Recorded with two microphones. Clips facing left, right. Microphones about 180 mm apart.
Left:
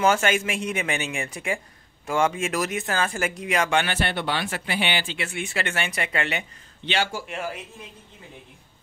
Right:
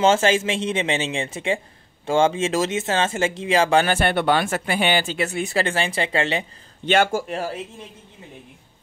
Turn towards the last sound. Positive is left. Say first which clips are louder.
# right 6 dB
turn(degrees=-35)  # may be behind; listen again after turning